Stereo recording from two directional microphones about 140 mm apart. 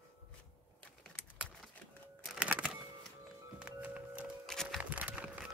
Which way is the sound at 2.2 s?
5° right (ahead or behind).